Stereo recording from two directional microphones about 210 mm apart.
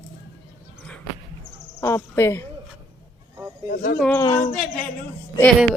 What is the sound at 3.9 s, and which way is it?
Speech, 5° left (ahead or behind).